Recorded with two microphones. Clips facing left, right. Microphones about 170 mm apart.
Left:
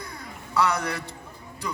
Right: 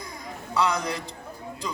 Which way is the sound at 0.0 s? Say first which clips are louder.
Right 1 dB; 15° right (ahead or behind).